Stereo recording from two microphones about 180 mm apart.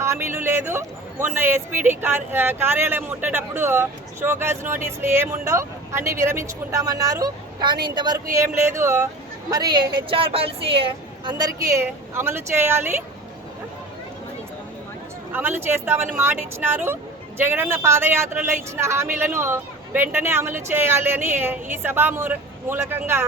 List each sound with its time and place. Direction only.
0.0 s a woman's voice: 15° right (ahead or behind)
15.3 s speech: 10° right (ahead or behind)